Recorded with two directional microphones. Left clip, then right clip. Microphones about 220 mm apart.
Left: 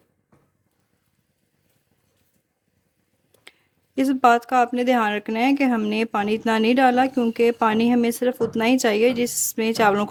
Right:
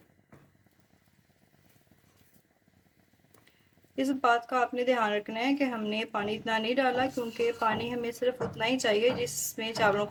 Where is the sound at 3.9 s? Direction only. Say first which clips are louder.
Left 9 dB; 50° left (ahead or behind).